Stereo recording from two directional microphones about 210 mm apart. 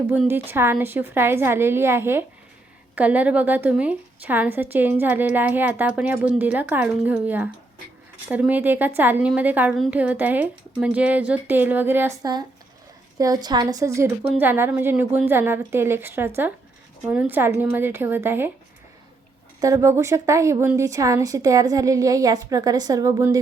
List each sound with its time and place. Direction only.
0.1 s a woman's voice: 10° right (ahead or behind)
19.6 s a woman's voice: 15° right (ahead or behind)